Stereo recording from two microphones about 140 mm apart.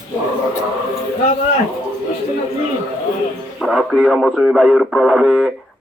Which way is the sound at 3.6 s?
Centre (ahead or behind).